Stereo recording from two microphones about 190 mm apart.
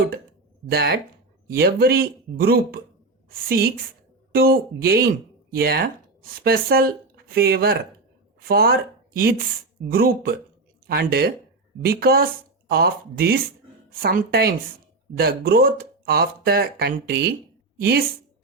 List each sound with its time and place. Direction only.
0.7 s a woman's voice: 60° right (ahead or behind)